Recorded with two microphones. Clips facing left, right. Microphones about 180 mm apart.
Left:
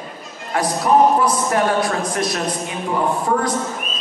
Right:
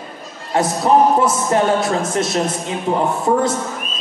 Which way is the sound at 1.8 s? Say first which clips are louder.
Right 2 dB; 25° right (ahead or behind).